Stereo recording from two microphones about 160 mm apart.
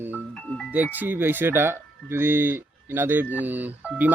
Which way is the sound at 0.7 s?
10° right (ahead or behind).